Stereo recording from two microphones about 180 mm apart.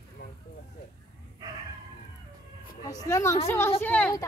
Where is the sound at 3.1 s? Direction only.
15° left (ahead or behind).